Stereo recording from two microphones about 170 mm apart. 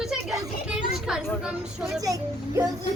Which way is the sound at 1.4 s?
5° right (ahead or behind).